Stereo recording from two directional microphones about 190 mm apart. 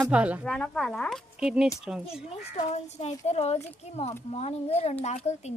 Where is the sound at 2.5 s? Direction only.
35° left (ahead or behind).